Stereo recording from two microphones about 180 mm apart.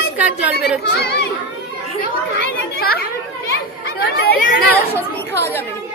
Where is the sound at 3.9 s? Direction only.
55° left (ahead or behind).